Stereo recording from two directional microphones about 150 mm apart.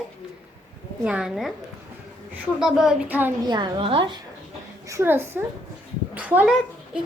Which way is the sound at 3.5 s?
30° right (ahead or behind).